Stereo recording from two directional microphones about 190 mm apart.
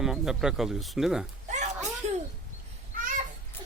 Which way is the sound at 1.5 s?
40° right (ahead or behind).